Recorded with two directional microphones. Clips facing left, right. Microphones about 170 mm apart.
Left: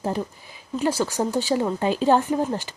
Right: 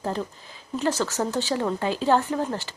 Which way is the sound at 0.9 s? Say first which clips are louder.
Left 2 dB; 10° left (ahead or behind).